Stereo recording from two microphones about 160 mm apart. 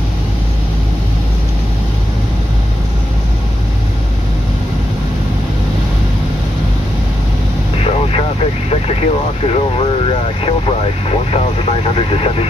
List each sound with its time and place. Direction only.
8.6 s vehicle: 40° left (ahead or behind)